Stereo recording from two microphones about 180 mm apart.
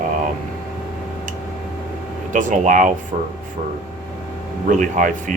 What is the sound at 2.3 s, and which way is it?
Speech, 45° right (ahead or behind).